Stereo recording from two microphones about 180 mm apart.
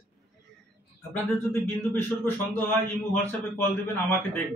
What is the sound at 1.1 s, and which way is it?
Speech, 10° left (ahead or behind).